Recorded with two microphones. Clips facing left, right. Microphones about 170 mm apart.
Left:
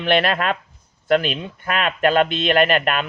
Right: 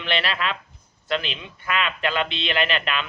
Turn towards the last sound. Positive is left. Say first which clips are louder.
# left 7 dB
turn(degrees=50)  # may be behind; listen again after turning